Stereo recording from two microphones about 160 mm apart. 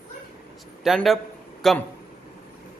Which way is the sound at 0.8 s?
Centre (ahead or behind).